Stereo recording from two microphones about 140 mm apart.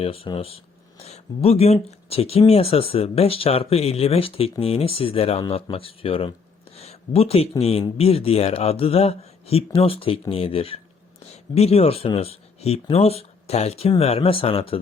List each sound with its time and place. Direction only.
0.0 s speech: 45° left (ahead or behind)
6.7 s a sound: 45° left (ahead or behind)
7.6 s speech: 45° left (ahead or behind)